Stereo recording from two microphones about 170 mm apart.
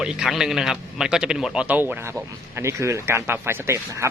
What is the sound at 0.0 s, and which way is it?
Speech, 5° right (ahead or behind).